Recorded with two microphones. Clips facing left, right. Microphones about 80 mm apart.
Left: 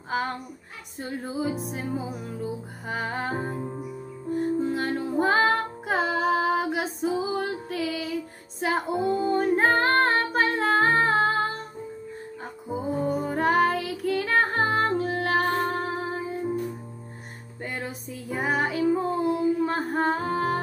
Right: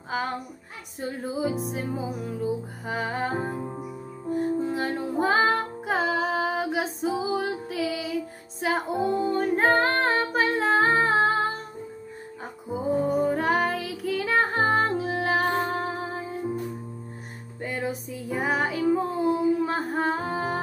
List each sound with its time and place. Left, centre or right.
1.2 s music: centre
3.6 s music: centre
4.3 s music: centre
12.7 s music: centre
17.6 s music: centre